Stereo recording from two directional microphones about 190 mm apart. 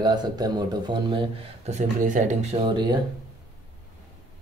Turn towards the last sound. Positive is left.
turn(degrees=-25)  # may be behind; listen again after turning